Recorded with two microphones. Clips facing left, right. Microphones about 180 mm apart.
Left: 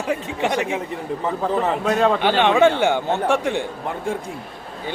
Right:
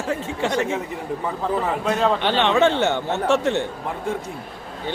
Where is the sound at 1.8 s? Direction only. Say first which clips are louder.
Left 3 dB; 60° left (ahead or behind).